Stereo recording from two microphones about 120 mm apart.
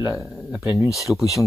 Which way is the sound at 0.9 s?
Centre (ahead or behind).